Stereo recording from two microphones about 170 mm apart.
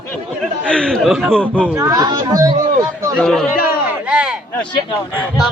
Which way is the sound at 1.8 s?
20° right (ahead or behind).